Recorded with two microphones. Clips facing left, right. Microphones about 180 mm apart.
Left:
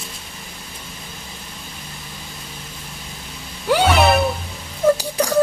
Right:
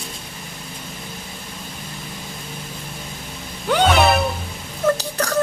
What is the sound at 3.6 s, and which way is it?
Vehicle, 5° left (ahead or behind).